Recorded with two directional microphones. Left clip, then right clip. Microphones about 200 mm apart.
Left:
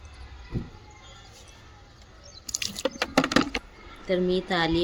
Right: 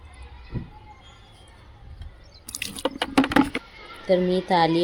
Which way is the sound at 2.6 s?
40° right (ahead or behind).